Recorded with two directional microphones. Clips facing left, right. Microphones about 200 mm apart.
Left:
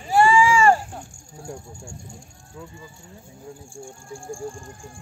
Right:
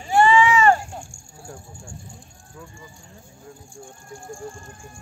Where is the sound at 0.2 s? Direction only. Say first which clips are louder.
Even; 10° left (ahead or behind).